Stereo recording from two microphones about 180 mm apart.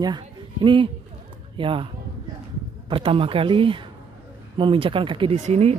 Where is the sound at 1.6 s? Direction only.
30° right (ahead or behind).